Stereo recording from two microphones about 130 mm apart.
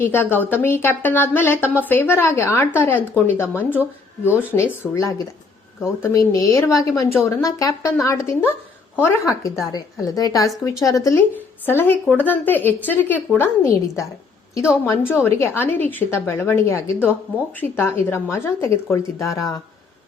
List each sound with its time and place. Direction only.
0.0 s a woman's voice: 15° left (ahead or behind)
15.1 s a woman's voice: 20° left (ahead or behind)